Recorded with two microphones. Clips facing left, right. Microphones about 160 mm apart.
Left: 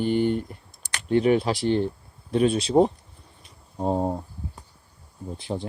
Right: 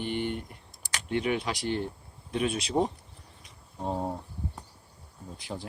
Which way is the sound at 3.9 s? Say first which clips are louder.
Left 7 dB; 25° left (ahead or behind).